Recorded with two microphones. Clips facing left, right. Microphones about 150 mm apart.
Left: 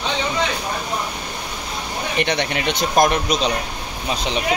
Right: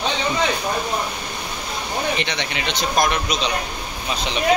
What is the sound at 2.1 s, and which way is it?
Speech, 55° left (ahead or behind).